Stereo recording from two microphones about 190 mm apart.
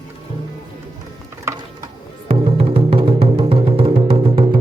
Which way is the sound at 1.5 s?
15° right (ahead or behind).